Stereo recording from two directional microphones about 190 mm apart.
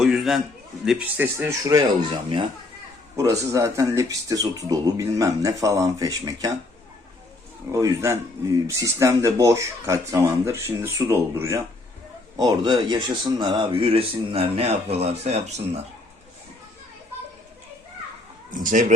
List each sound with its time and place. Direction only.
0.0 s a sound: centre (ahead or behind)
0.9 s speech: 5° right (ahead or behind)
3.5 s speech: 15° right (ahead or behind)
7.7 s speech: 15° right (ahead or behind); by 15.8 s 35° right (ahead or behind)
18.6 s speech: 45° right (ahead or behind)